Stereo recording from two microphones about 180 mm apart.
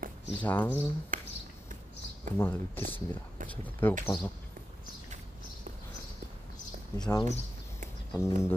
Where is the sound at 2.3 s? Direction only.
10° left (ahead or behind).